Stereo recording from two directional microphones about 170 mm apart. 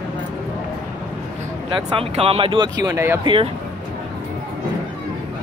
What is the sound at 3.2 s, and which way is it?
Speech, 30° right (ahead or behind).